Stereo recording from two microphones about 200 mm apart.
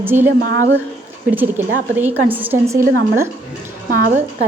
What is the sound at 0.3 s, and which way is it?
Speech, 40° right (ahead or behind).